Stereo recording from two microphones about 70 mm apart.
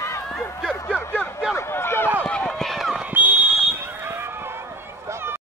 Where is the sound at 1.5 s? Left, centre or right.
Left.